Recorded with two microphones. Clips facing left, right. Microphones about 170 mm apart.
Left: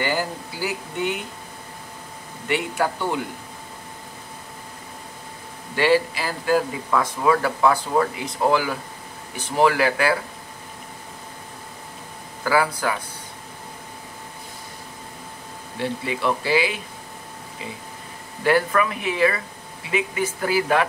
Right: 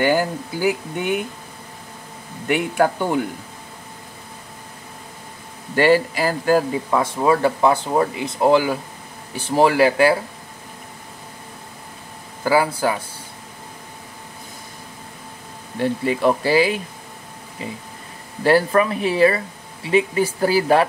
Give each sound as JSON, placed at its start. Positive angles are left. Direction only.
{"t": 0.0, "sound": "speech", "side_deg": -50}
{"t": 2.4, "sound": "speech", "side_deg": -50}
{"t": 5.8, "sound": "speech", "side_deg": -45}
{"t": 6.9, "sound": "speech", "side_deg": -25}
{"t": 12.4, "sound": "speech", "side_deg": -25}
{"t": 15.8, "sound": "speech", "side_deg": -40}
{"t": 18.4, "sound": "speech", "side_deg": -35}